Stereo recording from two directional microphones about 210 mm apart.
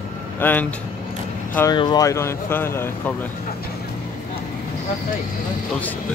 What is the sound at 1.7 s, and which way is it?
Speech, 20° left (ahead or behind).